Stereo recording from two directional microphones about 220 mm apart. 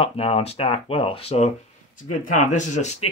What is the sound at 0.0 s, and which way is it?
Speech, 25° left (ahead or behind).